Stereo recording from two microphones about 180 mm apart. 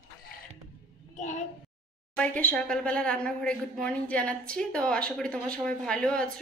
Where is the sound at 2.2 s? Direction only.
5° left (ahead or behind).